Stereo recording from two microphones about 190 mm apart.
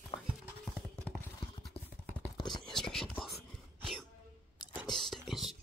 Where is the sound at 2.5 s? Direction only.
Centre (ahead or behind).